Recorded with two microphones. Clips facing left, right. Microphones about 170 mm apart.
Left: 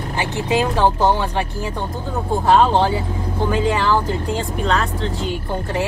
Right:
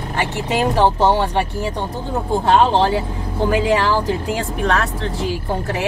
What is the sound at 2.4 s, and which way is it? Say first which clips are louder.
Speech: even; 75° right (ahead or behind).